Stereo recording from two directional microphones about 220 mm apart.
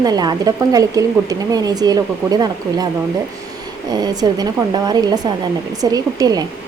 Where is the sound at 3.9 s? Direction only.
15° right (ahead or behind).